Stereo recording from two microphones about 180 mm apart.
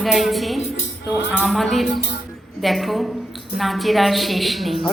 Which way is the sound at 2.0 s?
70° left (ahead or behind).